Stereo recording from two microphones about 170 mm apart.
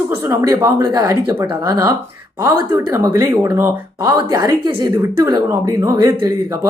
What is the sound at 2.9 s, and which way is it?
Speech, 20° right (ahead or behind).